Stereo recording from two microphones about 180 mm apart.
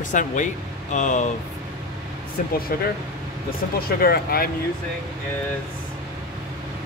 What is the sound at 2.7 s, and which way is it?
Speech, 55° left (ahead or behind).